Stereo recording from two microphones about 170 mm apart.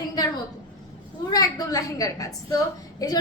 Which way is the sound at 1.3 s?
20° left (ahead or behind).